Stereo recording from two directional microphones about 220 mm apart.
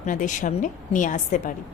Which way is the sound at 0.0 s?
35° left (ahead or behind).